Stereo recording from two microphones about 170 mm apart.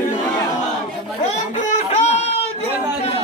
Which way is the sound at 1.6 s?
40° left (ahead or behind).